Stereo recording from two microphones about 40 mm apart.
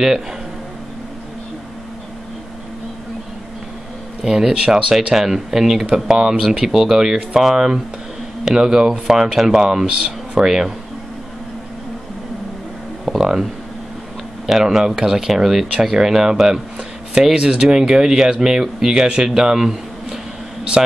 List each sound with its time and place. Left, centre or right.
4.2 s speech: centre
13.0 s a sound: centre
14.4 s speech: centre
17.4 s speech: right
20.7 s speech: right